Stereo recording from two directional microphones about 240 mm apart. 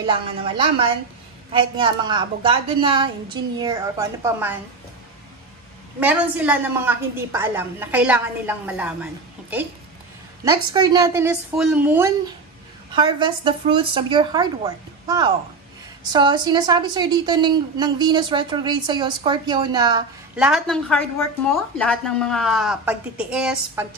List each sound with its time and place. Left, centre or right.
0.0 s a woman's voice: right
5.9 s a woman's voice: centre
10.4 s a woman's voice: centre
12.9 s a woman's voice: centre
20.3 s a woman's voice: centre